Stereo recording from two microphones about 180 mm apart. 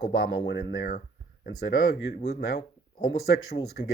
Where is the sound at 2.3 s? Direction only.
60° left (ahead or behind).